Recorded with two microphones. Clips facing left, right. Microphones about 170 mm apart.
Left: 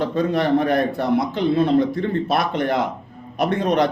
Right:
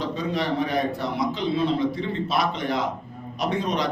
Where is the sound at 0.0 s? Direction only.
55° left (ahead or behind).